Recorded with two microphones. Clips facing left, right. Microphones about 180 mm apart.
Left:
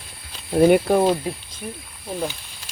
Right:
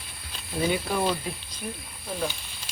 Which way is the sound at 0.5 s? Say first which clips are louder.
Left 12 dB; 55° left (ahead or behind).